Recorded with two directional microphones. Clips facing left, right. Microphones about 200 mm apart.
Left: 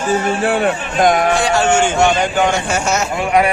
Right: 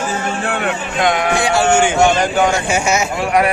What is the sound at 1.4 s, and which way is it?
Speech, 10° right (ahead or behind).